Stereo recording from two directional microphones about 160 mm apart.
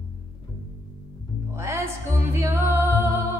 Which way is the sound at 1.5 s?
15° right (ahead or behind).